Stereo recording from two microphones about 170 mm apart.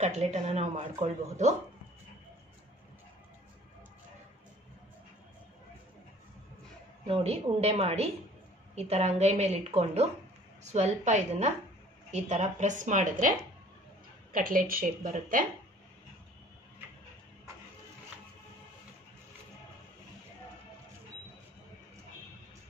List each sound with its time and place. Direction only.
0.0 s a woman's voice: 40° right (ahead or behind)
7.1 s a woman's voice: 35° right (ahead or behind); by 15.4 s 55° right (ahead or behind)